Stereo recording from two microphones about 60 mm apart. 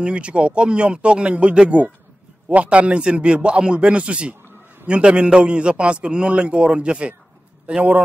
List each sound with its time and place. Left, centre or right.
0.0 s a man's voice: centre